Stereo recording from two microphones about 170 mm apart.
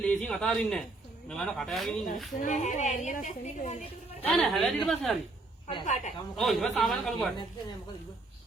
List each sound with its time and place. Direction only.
0.0 s a man's voice: 5° left (ahead or behind)
2.4 s a woman's voice: 45° left (ahead or behind)
4.2 s a man's voice: 5° left (ahead or behind)
5.8 s a woman's voice: 45° left (ahead or behind)
6.3 s a man's voice: centre (ahead or behind)